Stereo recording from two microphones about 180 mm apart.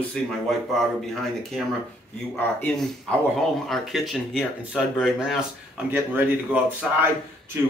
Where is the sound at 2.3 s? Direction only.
10° left (ahead or behind); by 7.1 s 10° right (ahead or behind).